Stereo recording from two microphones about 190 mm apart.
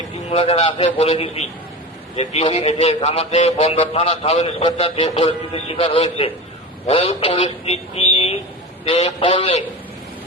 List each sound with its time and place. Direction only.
0.3 s a man's voice: 30° left (ahead or behind)